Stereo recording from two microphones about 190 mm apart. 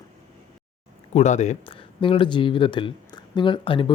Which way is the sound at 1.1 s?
40° left (ahead or behind).